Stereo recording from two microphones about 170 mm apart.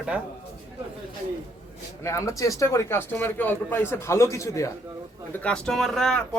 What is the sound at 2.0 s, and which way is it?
Speech, 15° left (ahead or behind).